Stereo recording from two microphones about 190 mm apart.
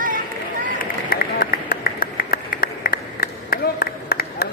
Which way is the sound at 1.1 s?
55° left (ahead or behind).